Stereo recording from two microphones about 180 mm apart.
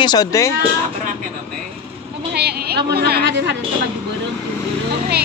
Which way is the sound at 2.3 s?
60° right (ahead or behind).